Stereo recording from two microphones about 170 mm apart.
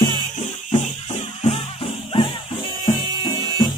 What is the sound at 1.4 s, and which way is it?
Music, 30° left (ahead or behind).